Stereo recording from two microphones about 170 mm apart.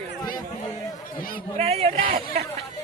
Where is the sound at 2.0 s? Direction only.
55° right (ahead or behind).